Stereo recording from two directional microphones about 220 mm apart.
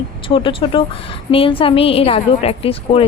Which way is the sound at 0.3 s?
25° left (ahead or behind).